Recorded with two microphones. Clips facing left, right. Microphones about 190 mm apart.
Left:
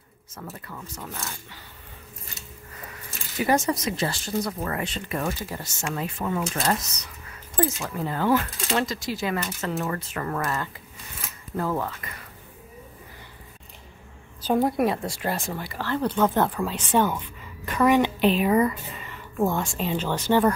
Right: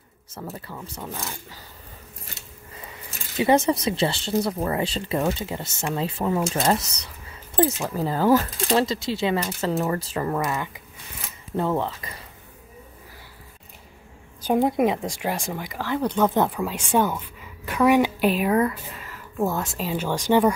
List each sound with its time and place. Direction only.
0.4 s speech: 30° right (ahead or behind)
3.3 s speech: 25° right (ahead or behind)
10.3 s speech: 15° right (ahead or behind)
11.5 s speech: 25° right (ahead or behind)
14.4 s speech: 15° right (ahead or behind)